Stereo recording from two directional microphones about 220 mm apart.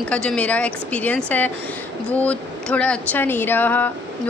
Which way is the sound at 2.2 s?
5° left (ahead or behind).